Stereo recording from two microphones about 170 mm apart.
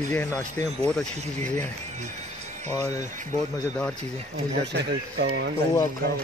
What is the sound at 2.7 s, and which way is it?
Speech, 20° left (ahead or behind).